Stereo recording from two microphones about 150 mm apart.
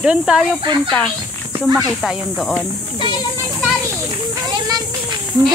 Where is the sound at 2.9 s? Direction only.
30° left (ahead or behind).